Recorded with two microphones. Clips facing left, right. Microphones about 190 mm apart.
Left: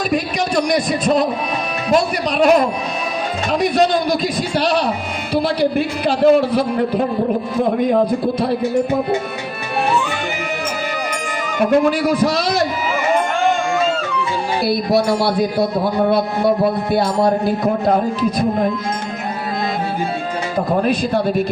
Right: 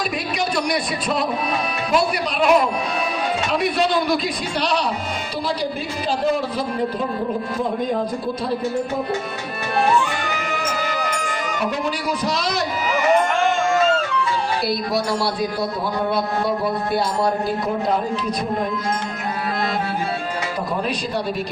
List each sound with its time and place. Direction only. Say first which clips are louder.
0.1 s a man's voice: left 5 dB; 45° left (ahead or behind)
2.4 s a man's voice: left 4 dB; 45° left (ahead or behind)
3.8 s a man's voice: left 5 dB; 45° left (ahead or behind)
5.3 s a man's voice: left 10 dB; 65° left (ahead or behind)
11.6 s a man's voice: left 11 dB; 50° left (ahead or behind)
17.8 s a man's voice: left 5 dB; 50° left (ahead or behind)
20.8 s a man's voice: left 7 dB; 50° left (ahead or behind)